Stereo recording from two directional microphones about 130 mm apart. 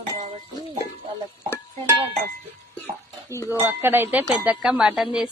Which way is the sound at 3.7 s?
15° right (ahead or behind).